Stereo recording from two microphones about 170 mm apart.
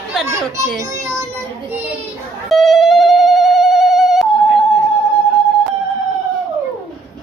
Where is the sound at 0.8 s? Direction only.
15° right (ahead or behind).